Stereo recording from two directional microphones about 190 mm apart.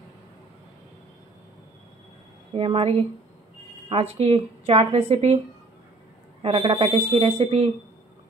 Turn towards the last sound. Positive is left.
turn(degrees=-30)  # may be behind; listen again after turning